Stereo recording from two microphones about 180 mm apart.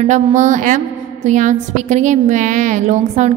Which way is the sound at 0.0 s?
40° right (ahead or behind).